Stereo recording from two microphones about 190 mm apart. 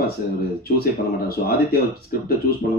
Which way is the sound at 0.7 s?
55° left (ahead or behind).